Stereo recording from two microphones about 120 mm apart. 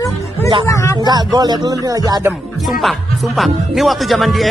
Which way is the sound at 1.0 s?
35° right (ahead or behind).